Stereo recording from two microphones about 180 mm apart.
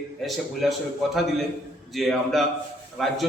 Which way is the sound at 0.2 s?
Centre (ahead or behind).